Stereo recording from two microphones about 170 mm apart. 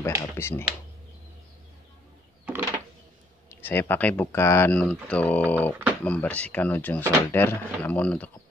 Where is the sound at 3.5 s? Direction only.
15° left (ahead or behind).